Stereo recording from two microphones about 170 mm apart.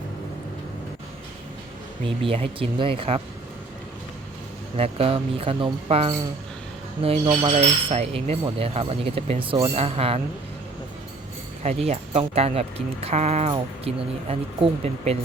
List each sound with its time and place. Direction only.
2.2 s speech: 35° right (ahead or behind)
4.8 s speech: 35° right (ahead or behind)
11.9 s speech: 40° right (ahead or behind)